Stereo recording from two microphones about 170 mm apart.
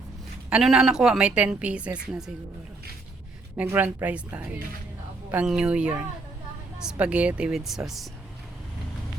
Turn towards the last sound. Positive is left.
turn(degrees=0)  # may be behind; listen again after turning